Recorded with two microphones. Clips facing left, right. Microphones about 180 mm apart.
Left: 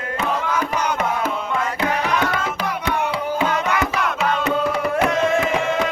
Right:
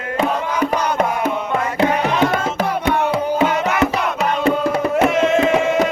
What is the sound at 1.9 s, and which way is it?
Tabla, 25° right (ahead or behind).